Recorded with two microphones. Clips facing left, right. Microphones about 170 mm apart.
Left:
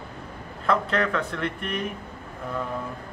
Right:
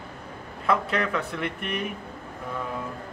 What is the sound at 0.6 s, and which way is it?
Speech, 5° right (ahead or behind).